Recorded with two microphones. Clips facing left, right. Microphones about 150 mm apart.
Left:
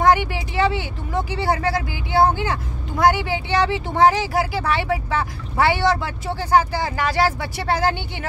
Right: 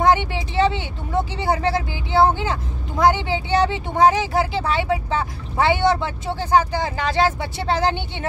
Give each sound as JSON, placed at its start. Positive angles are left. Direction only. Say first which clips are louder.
{"t": 0.0, "sound": "speech", "louder": "even", "side_deg": -25}